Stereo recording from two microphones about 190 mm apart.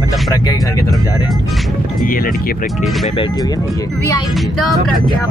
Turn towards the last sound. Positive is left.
turn(degrees=0)  # may be behind; listen again after turning